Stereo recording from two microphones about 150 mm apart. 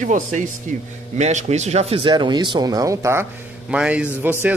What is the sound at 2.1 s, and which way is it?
Speech, 30° right (ahead or behind).